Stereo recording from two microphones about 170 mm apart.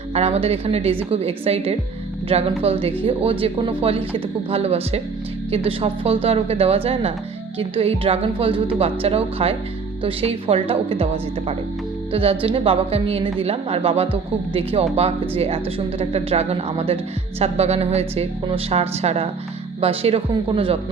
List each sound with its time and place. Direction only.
0.1 s a woman's voice: 35° right (ahead or behind)